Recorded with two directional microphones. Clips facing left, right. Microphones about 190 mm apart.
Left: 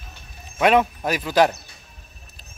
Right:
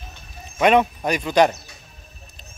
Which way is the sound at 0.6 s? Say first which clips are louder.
Right 1 dB; centre (ahead or behind).